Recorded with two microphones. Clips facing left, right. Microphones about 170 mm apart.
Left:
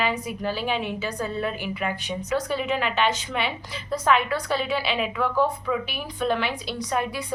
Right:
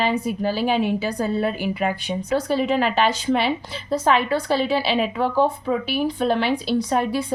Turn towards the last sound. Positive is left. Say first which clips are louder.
# right 7 dB
turn(degrees=-30)  # may be behind; listen again after turning